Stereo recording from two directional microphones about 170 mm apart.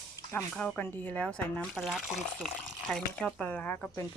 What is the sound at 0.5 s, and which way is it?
Speech, 10° left (ahead or behind).